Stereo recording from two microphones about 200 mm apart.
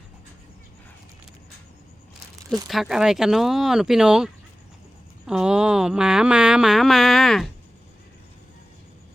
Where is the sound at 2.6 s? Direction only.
Centre (ahead or behind).